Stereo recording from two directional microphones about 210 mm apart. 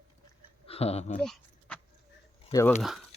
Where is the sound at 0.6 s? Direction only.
30° left (ahead or behind).